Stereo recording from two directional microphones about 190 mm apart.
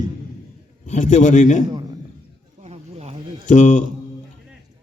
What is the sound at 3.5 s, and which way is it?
Speech, 40° left (ahead or behind).